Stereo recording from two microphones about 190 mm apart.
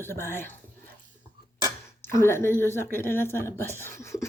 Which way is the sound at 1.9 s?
15° left (ahead or behind).